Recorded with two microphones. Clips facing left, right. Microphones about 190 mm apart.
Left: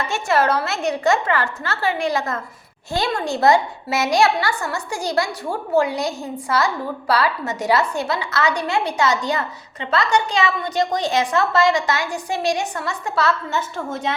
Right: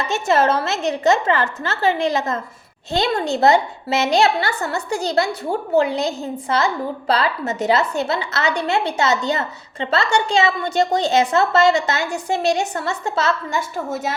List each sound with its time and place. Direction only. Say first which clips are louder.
0.0 s a woman's voice: right 2 dB; 20° right (ahead or behind)